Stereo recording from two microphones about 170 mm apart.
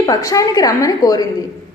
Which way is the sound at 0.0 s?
20° left (ahead or behind).